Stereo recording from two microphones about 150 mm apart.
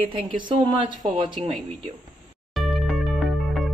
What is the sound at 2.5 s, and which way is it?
Music, centre (ahead or behind).